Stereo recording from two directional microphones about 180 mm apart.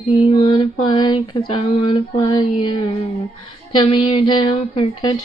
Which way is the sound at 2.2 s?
25° left (ahead or behind).